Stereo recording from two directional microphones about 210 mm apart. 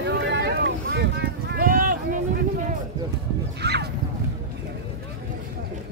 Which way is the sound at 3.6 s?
55° right (ahead or behind).